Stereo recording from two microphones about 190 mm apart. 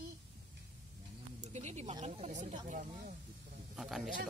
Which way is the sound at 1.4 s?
35° right (ahead or behind).